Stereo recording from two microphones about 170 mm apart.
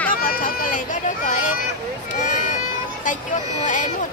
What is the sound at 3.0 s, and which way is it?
Speech, 45° left (ahead or behind).